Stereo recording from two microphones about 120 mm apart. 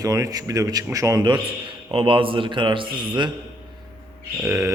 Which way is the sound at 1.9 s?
45° right (ahead or behind).